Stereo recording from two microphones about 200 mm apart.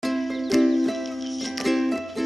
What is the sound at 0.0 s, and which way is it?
Music, centre (ahead or behind).